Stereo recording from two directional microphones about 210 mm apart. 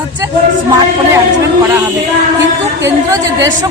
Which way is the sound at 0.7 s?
15° right (ahead or behind).